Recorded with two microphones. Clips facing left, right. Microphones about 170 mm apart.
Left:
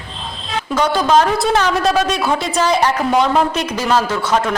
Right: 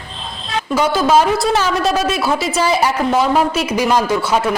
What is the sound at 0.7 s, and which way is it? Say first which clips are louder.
Speech: even; 5° right (ahead or behind).